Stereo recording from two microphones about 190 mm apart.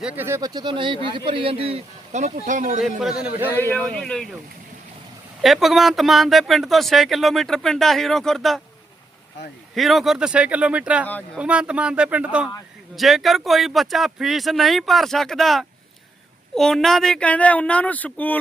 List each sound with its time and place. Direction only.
0.0 s speech: 10° right (ahead or behind); by 2.8 s 40° right (ahead or behind)
3.5 s speech: 10° left (ahead or behind)
5.4 s speech: centre (ahead or behind)
9.7 s speech: centre (ahead or behind)